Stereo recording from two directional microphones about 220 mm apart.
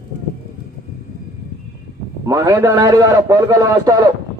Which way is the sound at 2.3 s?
15° right (ahead or behind).